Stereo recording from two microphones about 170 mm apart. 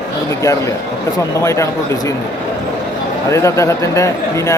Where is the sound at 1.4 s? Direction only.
15° left (ahead or behind).